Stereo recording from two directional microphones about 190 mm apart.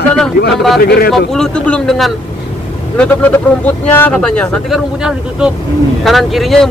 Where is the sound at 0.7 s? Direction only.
55° left (ahead or behind).